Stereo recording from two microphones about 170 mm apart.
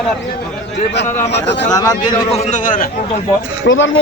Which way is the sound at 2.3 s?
50° left (ahead or behind).